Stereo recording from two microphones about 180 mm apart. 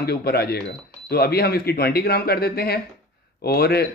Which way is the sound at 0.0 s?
60° left (ahead or behind).